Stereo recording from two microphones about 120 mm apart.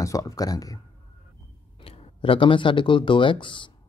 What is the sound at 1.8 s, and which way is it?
Speech, 50° left (ahead or behind).